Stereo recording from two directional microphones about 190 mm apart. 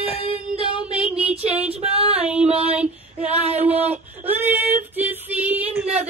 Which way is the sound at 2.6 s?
5° right (ahead or behind).